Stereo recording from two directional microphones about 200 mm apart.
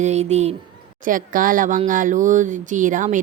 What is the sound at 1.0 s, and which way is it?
Speech, 40° right (ahead or behind).